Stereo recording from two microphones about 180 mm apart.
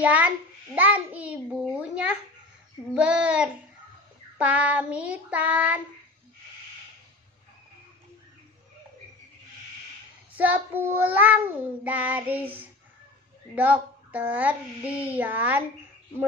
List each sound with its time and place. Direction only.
0.0 s child singing: 10° right (ahead or behind)
10.3 s child singing: 10° right (ahead or behind)